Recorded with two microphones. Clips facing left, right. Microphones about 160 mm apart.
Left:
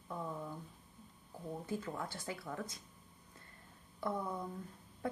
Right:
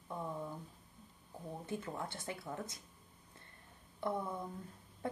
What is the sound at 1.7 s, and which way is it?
A woman's voice, 25° right (ahead or behind).